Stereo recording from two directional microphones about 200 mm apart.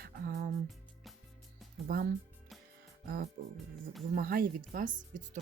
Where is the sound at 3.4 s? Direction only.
45° right (ahead or behind).